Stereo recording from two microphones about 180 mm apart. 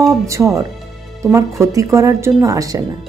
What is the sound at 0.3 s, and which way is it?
A woman's voice, 15° right (ahead or behind).